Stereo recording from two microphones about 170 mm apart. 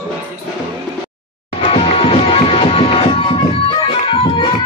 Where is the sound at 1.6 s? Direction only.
35° left (ahead or behind).